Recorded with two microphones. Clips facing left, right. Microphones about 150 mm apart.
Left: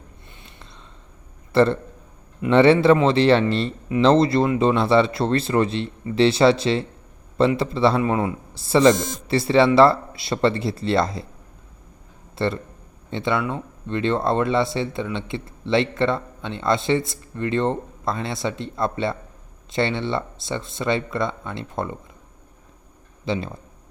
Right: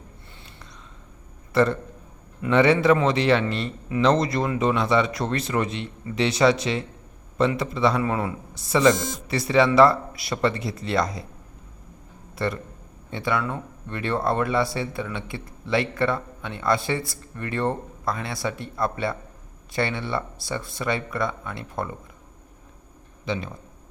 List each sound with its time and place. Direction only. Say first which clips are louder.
1.5 s speech: left 3 dB; 30° left (ahead or behind)
12.4 s speech: left 3 dB; 25° left (ahead or behind)
23.2 s speech: left 3 dB; 30° left (ahead or behind)